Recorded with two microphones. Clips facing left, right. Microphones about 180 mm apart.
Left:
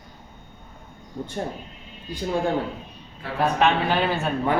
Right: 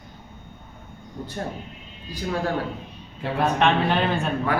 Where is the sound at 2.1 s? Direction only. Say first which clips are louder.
Left 2 dB; 25° left (ahead or behind).